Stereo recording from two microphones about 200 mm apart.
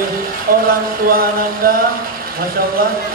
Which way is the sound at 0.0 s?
45° right (ahead or behind).